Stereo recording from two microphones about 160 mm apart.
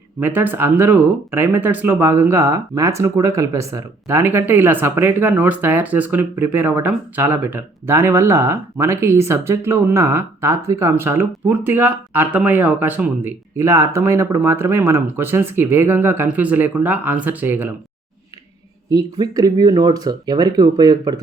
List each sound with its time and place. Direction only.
0.2 s speech: 10° right (ahead or behind)
18.9 s speech: 25° right (ahead or behind)